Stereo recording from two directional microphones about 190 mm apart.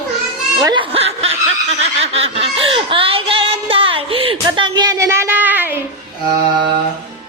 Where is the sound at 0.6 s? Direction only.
25° right (ahead or behind).